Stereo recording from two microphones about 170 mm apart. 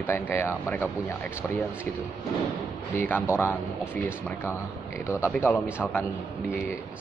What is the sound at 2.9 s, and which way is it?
Speech, 10° left (ahead or behind).